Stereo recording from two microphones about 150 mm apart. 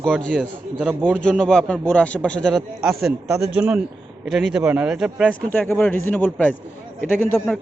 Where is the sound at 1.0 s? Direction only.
10° right (ahead or behind).